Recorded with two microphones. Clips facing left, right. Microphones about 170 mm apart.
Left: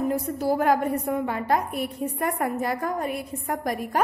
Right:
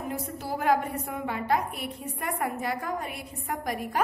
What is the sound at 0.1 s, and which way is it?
A woman's voice, 45° left (ahead or behind).